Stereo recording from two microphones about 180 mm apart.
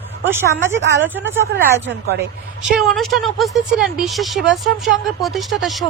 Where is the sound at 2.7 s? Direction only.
Centre (ahead or behind).